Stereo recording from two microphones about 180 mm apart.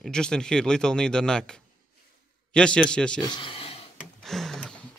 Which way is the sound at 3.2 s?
25° left (ahead or behind).